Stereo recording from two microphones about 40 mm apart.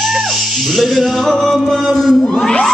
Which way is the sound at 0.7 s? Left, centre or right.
Centre.